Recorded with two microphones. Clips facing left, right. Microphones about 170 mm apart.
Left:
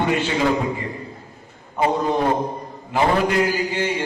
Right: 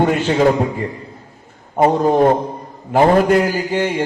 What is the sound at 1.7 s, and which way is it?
A man's voice, 45° right (ahead or behind).